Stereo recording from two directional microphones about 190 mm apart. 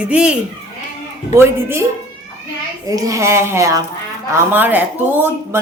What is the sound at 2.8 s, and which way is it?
Speech, 15° right (ahead or behind).